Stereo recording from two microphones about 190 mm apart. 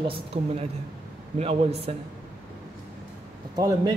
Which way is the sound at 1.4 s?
30° right (ahead or behind).